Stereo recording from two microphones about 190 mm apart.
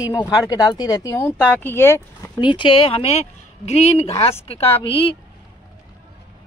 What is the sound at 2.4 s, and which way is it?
Speech, 25° left (ahead or behind).